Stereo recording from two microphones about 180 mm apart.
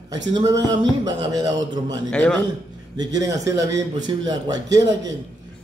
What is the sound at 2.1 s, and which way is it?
Speech, 5° left (ahead or behind).